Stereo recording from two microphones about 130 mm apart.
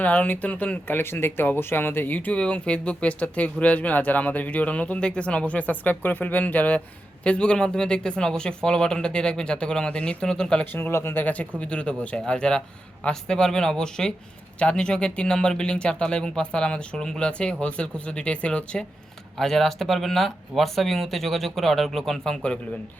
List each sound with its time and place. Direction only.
0.0 s speech: 10° left (ahead or behind)